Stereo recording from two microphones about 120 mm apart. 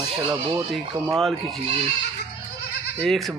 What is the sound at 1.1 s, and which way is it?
Speech, centre (ahead or behind).